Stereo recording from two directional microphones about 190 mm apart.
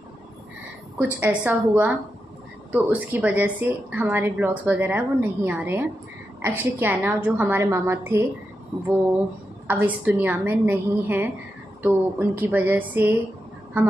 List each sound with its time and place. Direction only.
0.9 s a woman's voice: 10° right (ahead or behind)
9.7 s a woman's voice: 10° right (ahead or behind)